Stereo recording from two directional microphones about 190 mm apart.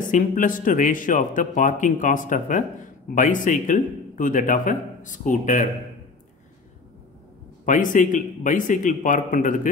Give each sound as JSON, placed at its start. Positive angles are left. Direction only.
{"t": 0.1, "sound": "speech", "side_deg": 45}
{"t": 7.6, "sound": "speech", "side_deg": 45}